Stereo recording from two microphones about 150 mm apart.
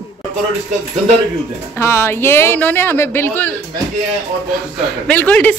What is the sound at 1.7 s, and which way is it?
A man's voice, 15° left (ahead or behind).